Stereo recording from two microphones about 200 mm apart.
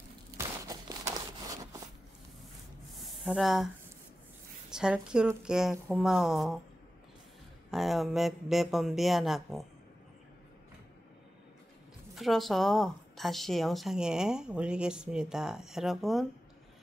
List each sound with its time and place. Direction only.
0.4 s a sound: 15° right (ahead or behind)
3.3 s speech: centre (ahead or behind)
7.7 s speech: centre (ahead or behind)
12.2 s speech: centre (ahead or behind)